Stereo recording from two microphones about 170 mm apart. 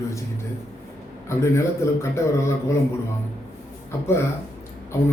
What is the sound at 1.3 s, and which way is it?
A man's voice, 15° left (ahead or behind).